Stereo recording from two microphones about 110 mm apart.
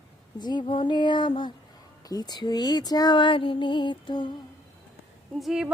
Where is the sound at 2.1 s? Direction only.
35° left (ahead or behind).